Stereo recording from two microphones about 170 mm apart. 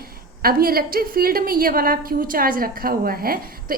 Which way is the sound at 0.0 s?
60° right (ahead or behind).